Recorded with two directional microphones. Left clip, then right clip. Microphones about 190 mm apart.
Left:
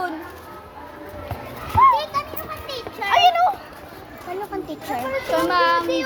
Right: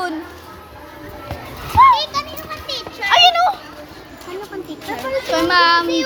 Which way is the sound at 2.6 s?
60° left (ahead or behind).